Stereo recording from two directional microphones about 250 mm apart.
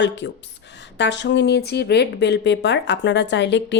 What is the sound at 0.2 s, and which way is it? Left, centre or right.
Speech, left.